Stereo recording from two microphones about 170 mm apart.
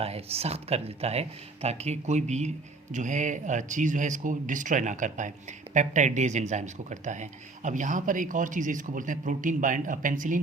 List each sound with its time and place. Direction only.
0.0 s speech: 35° right (ahead or behind)